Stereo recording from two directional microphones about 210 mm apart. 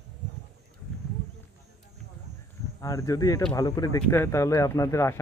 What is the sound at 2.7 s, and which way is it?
Speech, 15° left (ahead or behind).